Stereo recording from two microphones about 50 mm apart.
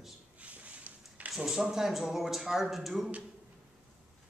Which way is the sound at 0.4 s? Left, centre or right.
Right.